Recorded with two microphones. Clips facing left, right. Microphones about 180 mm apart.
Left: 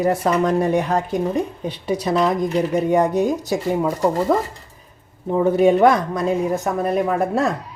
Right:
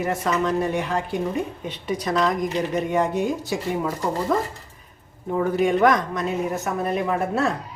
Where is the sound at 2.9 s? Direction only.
40° left (ahead or behind).